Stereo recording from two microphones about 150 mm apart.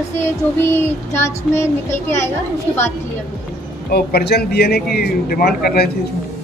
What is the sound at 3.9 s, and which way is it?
Speech, 90° left.